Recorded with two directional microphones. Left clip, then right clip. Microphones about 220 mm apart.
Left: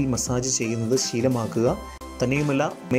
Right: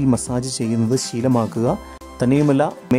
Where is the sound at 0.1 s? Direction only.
15° right (ahead or behind).